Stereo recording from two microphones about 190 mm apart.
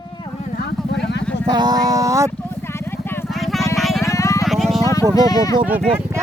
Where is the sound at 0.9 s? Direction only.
65° left (ahead or behind).